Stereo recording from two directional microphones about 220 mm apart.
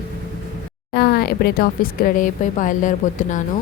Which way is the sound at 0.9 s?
45° left (ahead or behind).